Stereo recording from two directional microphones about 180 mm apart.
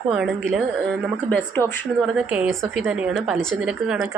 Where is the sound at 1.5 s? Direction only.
10° left (ahead or behind).